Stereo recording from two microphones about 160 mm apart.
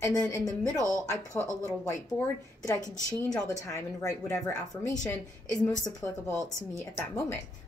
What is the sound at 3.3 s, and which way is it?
A woman's voice, 20° left (ahead or behind).